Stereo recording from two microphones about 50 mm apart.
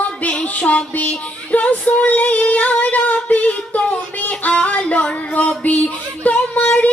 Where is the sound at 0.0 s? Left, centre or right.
Left.